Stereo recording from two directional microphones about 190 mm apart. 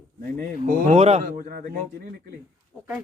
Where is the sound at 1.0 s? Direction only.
35° right (ahead or behind).